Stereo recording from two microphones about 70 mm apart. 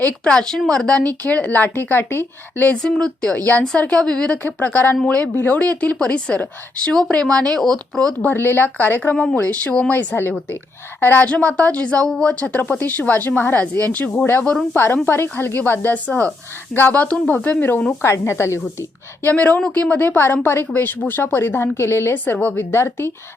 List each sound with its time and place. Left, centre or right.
0.3 s a woman's voice: centre; by 2.6 s left
2.8 s speech: centre
4.4 s speech: left; by 8.1 s centre
8.2 s speech: left
15.0 s speech: left
18.0 s a woman's voice: left
19.2 s speech: left
22.2 s speech: left
22.7 s a woman's voice: left